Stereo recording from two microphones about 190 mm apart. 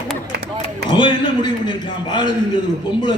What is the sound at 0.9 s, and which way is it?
A man's voice, 25° left (ahead or behind).